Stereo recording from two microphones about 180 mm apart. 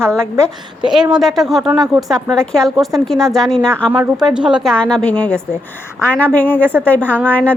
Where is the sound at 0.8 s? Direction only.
Centre (ahead or behind).